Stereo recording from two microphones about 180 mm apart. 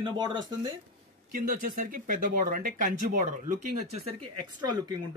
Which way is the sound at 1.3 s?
50° right (ahead or behind).